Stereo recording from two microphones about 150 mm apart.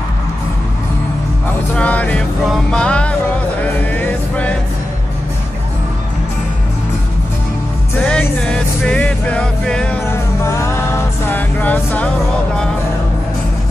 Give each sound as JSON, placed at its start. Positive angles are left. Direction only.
{"t": 1.8, "sound": "music", "side_deg": 10}
{"t": 8.0, "sound": "music", "side_deg": 10}
{"t": 10.1, "sound": "music", "side_deg": 20}